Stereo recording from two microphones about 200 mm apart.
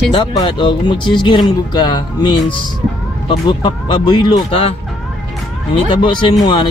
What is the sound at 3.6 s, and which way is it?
Speech, 25° left (ahead or behind).